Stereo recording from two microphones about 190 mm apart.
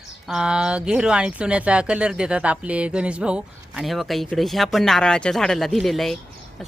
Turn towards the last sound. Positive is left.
turn(degrees=0)  # may be behind; listen again after turning